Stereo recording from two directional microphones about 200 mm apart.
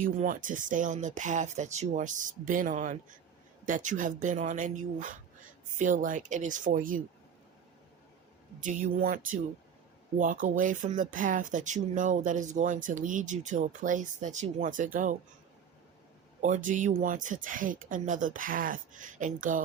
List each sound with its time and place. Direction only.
0.0 s speech: 40° right (ahead or behind)
8.6 s speech: 40° right (ahead or behind)
16.4 s speech: 40° right (ahead or behind)